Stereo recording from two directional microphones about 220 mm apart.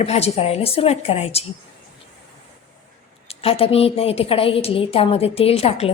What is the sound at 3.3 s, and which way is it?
A woman's voice, 25° left (ahead or behind).